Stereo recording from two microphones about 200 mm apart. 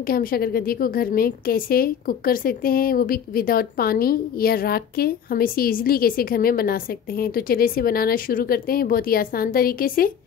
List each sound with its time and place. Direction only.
0.0 s a woman's voice: 45° left (ahead or behind)